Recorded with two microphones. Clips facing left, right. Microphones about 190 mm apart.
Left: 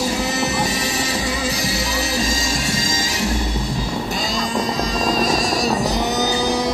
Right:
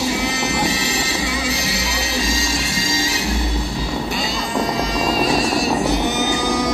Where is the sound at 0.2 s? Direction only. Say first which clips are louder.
Even; 45° left (ahead or behind).